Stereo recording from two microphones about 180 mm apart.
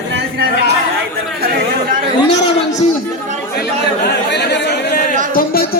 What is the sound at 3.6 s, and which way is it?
Chatter, 70° left (ahead or behind).